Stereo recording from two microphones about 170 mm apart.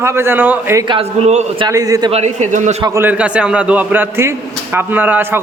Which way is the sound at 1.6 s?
20° right (ahead or behind).